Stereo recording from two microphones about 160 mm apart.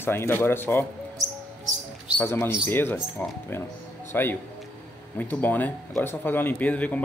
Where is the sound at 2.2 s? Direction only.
10° left (ahead or behind).